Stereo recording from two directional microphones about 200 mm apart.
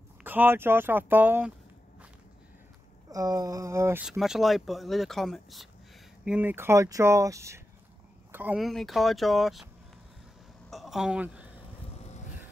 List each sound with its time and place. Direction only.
0.2 s speech: 10° right (ahead or behind)
3.1 s speech: 15° right (ahead or behind); by 9.7 s centre (ahead or behind)
10.7 s a sound: centre (ahead or behind)
12.0 s vehicle: 35° left (ahead or behind)